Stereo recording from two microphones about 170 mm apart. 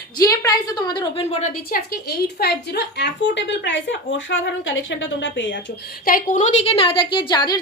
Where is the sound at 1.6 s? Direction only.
60° left (ahead or behind); by 5.6 s 90° left.